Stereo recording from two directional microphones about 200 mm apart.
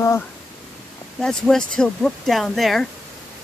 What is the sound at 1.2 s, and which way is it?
Speech, 5° left (ahead or behind).